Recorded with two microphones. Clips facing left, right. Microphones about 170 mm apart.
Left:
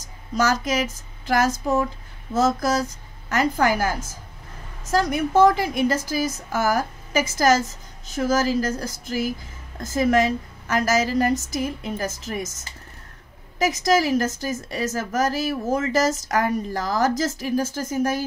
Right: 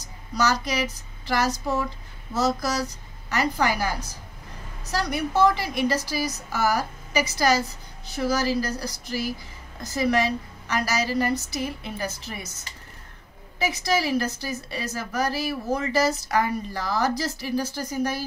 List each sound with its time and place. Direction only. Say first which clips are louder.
0.0 s a woman's voice: left 2 dB; 50° left (ahead or behind)
13.6 s a woman's voice: left 5 dB; 45° left (ahead or behind)